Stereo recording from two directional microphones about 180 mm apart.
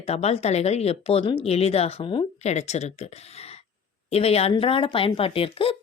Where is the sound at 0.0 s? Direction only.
35° left (ahead or behind).